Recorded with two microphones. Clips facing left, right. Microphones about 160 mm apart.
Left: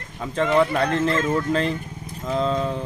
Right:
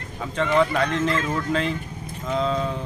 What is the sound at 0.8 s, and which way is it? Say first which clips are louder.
Speech: left 2 dB; 35° left (ahead or behind).